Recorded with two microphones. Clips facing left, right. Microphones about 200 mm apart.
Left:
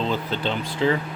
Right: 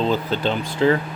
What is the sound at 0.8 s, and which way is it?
Speech, 50° right (ahead or behind).